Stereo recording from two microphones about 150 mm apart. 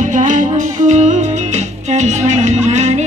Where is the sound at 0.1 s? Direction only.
55° right (ahead or behind).